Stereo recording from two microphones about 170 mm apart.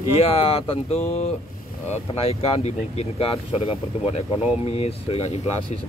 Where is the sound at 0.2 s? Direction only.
35° left (ahead or behind).